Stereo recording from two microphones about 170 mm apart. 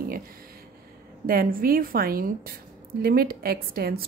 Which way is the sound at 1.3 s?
60° right (ahead or behind).